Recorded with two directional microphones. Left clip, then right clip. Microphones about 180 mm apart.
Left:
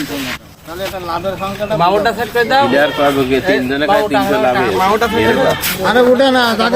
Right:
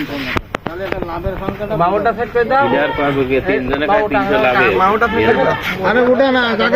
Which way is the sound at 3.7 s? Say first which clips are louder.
Even; 75° left (ahead or behind).